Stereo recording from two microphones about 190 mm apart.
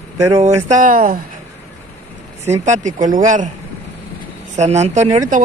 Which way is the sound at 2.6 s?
40° right (ahead or behind).